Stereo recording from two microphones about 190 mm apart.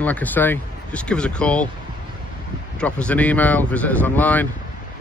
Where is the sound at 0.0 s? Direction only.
10° left (ahead or behind).